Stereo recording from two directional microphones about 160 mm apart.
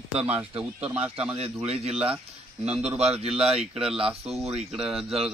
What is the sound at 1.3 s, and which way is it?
Speech, 40° right (ahead or behind).